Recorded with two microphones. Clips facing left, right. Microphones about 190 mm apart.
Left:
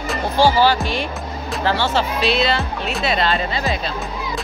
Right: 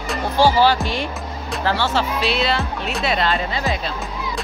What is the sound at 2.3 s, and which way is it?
Speech, 10° right (ahead or behind).